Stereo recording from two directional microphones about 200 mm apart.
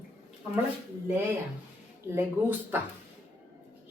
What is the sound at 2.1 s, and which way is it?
Speech, 10° right (ahead or behind).